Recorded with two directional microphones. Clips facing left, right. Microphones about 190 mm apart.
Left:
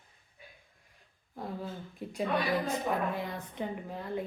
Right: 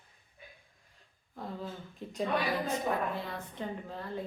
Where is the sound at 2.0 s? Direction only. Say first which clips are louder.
Even; 10° left (ahead or behind).